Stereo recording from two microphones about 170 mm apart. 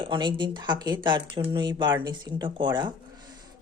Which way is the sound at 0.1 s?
25° right (ahead or behind).